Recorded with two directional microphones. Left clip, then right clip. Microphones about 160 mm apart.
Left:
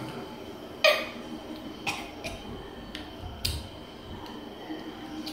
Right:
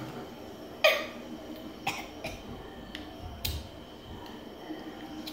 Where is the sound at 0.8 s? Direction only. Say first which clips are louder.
Left 2 dB; 55° right (ahead or behind).